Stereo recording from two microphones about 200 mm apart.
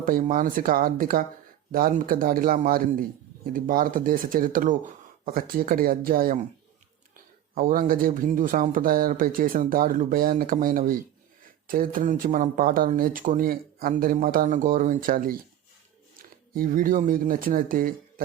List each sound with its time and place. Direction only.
0.0 s speech: 40° right (ahead or behind)
7.5 s speech: 45° right (ahead or behind)
16.6 s speech: 45° right (ahead or behind)